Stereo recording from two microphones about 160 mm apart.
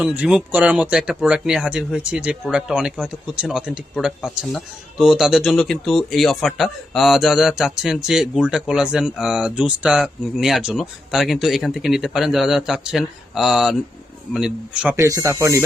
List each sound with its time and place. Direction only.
0.0 s speech: 10° right (ahead or behind)
14.9 s speech: 20° right (ahead or behind)